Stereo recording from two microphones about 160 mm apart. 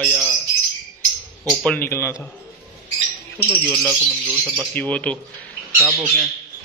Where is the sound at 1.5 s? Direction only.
10° left (ahead or behind).